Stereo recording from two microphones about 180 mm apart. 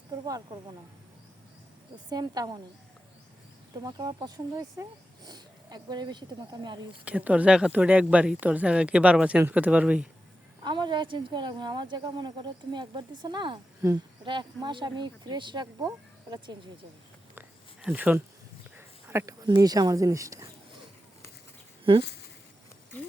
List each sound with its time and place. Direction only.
0.1 s speech: 20° right (ahead or behind)
2.0 s speech: 25° right (ahead or behind)
3.8 s speech: 20° right (ahead or behind)
7.0 s speech: 5° right (ahead or behind)
10.6 s speech: 25° right (ahead or behind)
17.8 s speech: 10° right (ahead or behind)
21.9 s speech: 30° right (ahead or behind)